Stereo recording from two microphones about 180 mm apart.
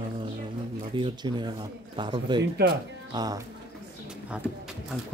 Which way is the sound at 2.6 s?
65° right (ahead or behind).